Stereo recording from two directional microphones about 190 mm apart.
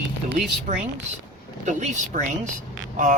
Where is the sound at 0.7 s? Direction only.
40° right (ahead or behind).